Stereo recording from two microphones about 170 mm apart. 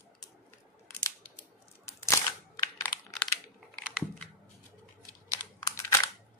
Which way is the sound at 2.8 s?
10° left (ahead or behind).